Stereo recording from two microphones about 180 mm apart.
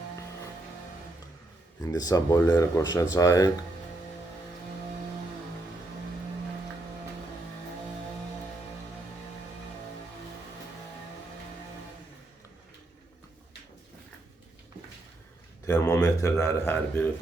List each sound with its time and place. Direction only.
1.8 s speech: 20° left (ahead or behind)
15.6 s a man's voice: 15° left (ahead or behind)